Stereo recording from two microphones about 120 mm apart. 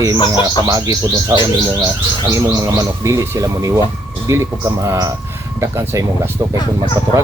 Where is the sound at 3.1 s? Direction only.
25° right (ahead or behind).